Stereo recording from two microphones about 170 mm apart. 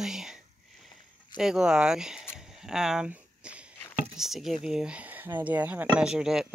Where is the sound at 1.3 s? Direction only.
5° right (ahead or behind).